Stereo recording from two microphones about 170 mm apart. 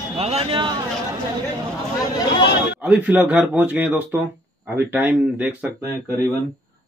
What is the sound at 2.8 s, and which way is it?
A man's voice, 10° right (ahead or behind).